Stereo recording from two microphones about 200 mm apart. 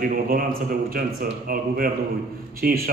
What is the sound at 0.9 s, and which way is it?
A man's voice, 45° right (ahead or behind).